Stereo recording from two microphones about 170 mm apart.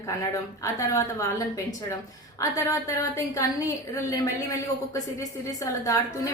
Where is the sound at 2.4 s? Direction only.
20° left (ahead or behind).